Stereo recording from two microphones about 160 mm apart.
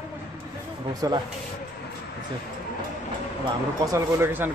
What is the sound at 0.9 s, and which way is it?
Speech, 25° right (ahead or behind).